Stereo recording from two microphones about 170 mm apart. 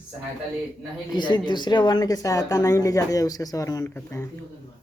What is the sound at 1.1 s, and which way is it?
A woman's voice, 25° left (ahead or behind).